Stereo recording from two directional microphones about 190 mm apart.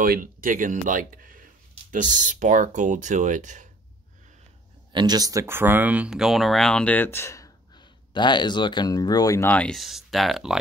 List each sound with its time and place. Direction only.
0.0 s speech: 45° right (ahead or behind)
4.9 s speech: 20° right (ahead or behind); by 10.6 s centre (ahead or behind)